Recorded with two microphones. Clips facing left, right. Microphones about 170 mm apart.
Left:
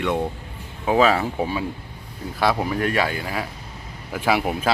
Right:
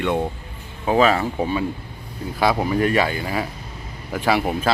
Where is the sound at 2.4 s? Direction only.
5° right (ahead or behind).